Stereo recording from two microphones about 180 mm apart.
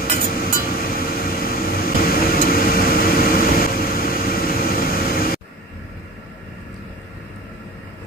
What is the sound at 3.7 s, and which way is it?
Vehicle, 55° left (ahead or behind).